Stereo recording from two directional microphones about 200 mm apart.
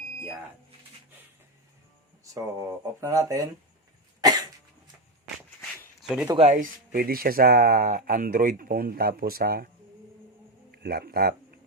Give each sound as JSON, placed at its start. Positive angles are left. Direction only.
{"t": 2.2, "sound": "speech", "side_deg": -15}
{"t": 4.2, "sound": "cough", "side_deg": -20}
{"t": 6.0, "sound": "a sound", "side_deg": -5}
{"t": 6.2, "sound": "speech", "side_deg": -25}
{"t": 6.5, "sound": "speech", "side_deg": -45}
{"t": 10.7, "sound": "speech", "side_deg": -50}